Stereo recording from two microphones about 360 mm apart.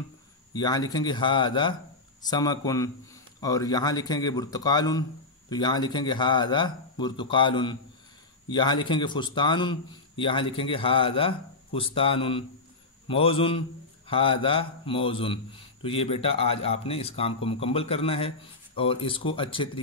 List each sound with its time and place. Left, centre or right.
0.6 s a man's voice: centre